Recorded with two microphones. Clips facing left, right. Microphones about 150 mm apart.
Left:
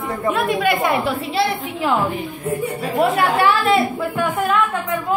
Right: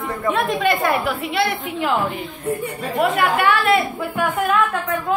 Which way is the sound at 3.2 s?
30° left (ahead or behind).